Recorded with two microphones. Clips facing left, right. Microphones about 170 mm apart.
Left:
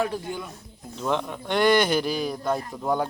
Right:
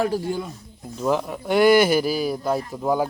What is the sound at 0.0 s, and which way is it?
Speech, 35° right (ahead or behind).